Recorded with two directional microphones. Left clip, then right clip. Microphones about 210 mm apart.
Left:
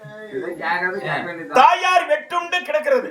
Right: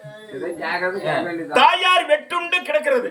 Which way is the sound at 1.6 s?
5° right (ahead or behind).